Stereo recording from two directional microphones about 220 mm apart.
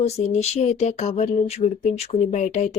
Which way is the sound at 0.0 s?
30° left (ahead or behind).